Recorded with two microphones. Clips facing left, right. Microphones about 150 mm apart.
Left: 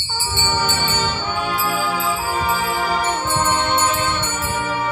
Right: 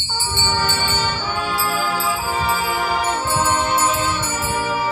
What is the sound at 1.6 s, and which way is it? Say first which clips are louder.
Music: even; 5° left (ahead or behind).